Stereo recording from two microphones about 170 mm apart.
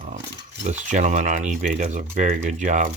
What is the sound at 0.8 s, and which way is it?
Speech, 45° right (ahead or behind).